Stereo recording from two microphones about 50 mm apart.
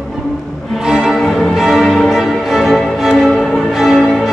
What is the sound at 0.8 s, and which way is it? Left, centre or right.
Music, centre.